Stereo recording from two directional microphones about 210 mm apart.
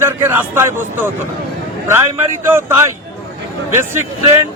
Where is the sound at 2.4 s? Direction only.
10° right (ahead or behind).